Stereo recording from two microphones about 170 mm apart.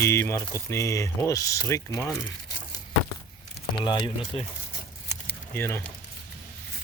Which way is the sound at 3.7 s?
30° left (ahead or behind).